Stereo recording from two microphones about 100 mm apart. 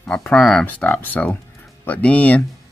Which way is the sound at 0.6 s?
15° left (ahead or behind).